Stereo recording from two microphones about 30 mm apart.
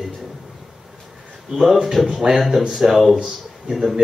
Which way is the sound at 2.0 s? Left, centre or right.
Centre.